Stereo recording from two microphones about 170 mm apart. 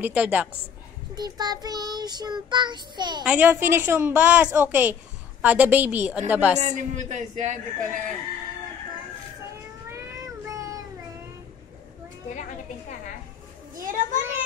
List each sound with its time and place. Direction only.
0.0 s a woman's voice: 10° right (ahead or behind)
1.1 s child singing: 25° right (ahead or behind)
3.3 s a woman's voice: 10° right (ahead or behind)
6.6 s a man's voice: 45° right (ahead or behind)
9.8 s meow: 15° right (ahead or behind)
12.3 s a sound: 50° left (ahead or behind)
13.7 s a sound: 55° right (ahead or behind)